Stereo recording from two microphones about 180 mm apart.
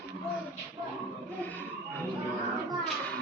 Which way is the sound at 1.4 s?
10° left (ahead or behind).